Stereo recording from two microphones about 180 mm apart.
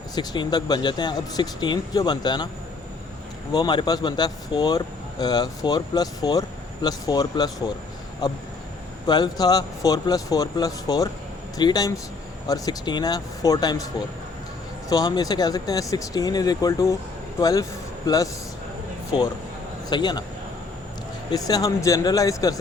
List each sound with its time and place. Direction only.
0.2 s speech: 20° left (ahead or behind)
3.5 s speech: 25° left (ahead or behind)
14.8 s speech: 20° left (ahead or behind)
19.9 s speech: 25° left (ahead or behind)
21.2 s speech: 20° left (ahead or behind)